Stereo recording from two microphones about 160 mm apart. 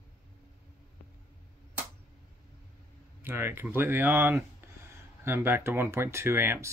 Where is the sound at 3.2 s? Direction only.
15° right (ahead or behind).